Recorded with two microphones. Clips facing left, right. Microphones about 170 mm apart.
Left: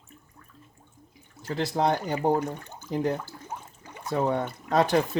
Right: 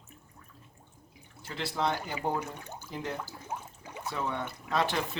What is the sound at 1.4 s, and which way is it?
Speech, 40° left (ahead or behind).